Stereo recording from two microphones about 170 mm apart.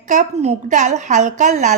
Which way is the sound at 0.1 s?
45° right (ahead or behind).